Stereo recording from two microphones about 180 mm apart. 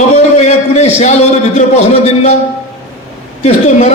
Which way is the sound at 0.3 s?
40° left (ahead or behind).